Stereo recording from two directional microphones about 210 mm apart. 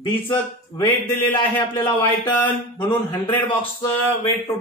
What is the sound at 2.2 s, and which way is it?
Speech, 10° left (ahead or behind).